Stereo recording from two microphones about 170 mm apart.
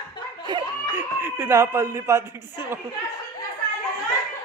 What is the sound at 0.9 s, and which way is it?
Speech, 10° right (ahead or behind).